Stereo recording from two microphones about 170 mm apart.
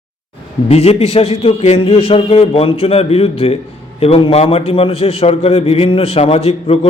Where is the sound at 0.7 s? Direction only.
35° left (ahead or behind).